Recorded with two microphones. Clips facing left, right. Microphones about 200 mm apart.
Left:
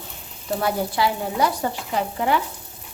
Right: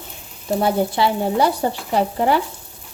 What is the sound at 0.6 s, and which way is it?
Stir, 25° right (ahead or behind).